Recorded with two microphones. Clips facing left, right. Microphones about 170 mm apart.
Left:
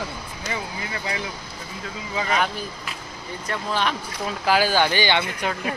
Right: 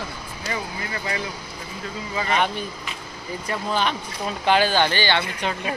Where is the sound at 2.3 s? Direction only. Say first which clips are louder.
Right 2 dB; centre (ahead or behind).